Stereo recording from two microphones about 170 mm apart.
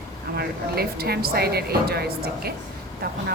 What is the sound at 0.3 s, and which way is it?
A woman's voice, 65° right (ahead or behind).